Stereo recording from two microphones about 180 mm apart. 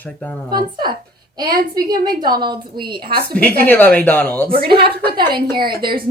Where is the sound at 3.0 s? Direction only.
60° right (ahead or behind).